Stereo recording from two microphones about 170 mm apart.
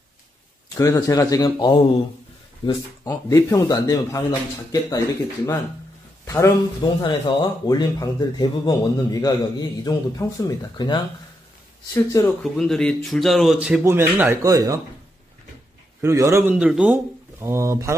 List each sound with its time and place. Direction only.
0.7 s speech: 20° left (ahead or behind)
3.1 s speech: 15° left (ahead or behind)
6.2 s speech: 20° left (ahead or behind)
12.4 s speech: centre (ahead or behind)
13.8 s a man's voice: 15° right (ahead or behind)
16.0 s a man's voice: 15° right (ahead or behind)